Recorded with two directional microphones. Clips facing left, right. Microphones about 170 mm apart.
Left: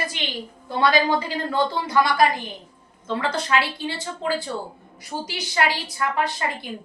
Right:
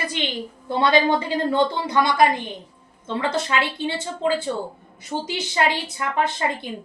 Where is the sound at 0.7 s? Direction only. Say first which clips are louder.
Right 2 dB; 20° right (ahead or behind).